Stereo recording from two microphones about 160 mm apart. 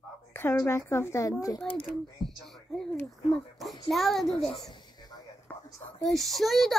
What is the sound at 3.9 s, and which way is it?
Speech, centre (ahead or behind).